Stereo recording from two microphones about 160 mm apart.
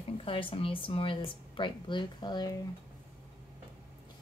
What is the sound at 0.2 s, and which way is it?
A woman's voice, 35° left (ahead or behind).